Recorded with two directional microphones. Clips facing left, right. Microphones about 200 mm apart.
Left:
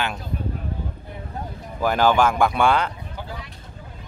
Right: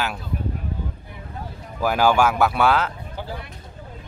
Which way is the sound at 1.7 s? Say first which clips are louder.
Even; 5° right (ahead or behind).